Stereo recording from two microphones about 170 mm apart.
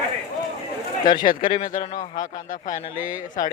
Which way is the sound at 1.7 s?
50° left (ahead or behind).